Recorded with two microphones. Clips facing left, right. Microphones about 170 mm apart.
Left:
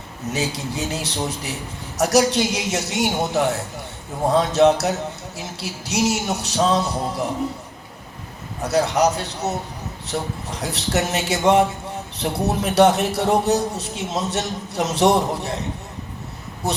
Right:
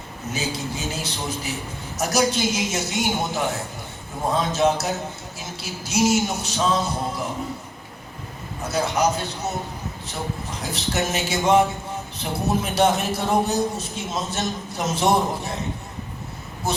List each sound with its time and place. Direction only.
0.3 s a man's voice: 70° left (ahead or behind)
8.6 s a man's voice: 70° left (ahead or behind)
16.7 s a man's voice: 70° left (ahead or behind)